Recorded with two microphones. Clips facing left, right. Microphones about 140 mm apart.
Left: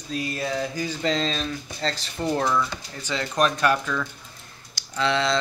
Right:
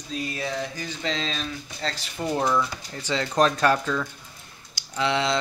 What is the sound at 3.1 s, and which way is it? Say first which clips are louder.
Speech: right 2 dB; 30° right (ahead or behind).